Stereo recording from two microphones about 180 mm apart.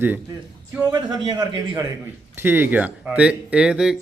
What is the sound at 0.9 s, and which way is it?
A man's voice, 20° right (ahead or behind).